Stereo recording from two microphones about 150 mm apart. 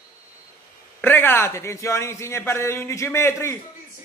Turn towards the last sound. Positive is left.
turn(degrees=15)  # may be behind; listen again after turning